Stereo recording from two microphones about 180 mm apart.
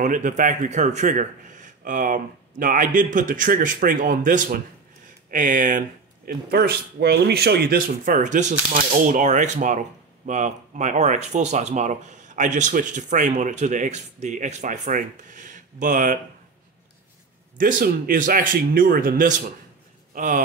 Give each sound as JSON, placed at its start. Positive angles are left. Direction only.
{"t": 0.0, "sound": "speech", "side_deg": -45}
{"t": 17.6, "sound": "speech", "side_deg": -50}